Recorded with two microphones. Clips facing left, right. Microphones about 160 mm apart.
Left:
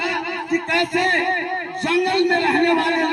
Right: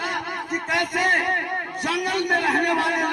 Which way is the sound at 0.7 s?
25° left (ahead or behind).